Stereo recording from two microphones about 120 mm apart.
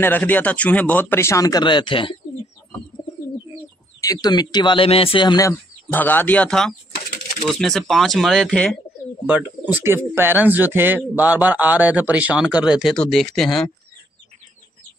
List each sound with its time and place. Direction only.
0.0 s speech: 15° left (ahead or behind); by 2.1 s 45° left (ahead or behind)
4.0 s a man's voice: 30° left (ahead or behind)
5.4 s speech: 20° left (ahead or behind)
9.2 s speech: 15° right (ahead or behind); by 13.7 s 5° left (ahead or behind)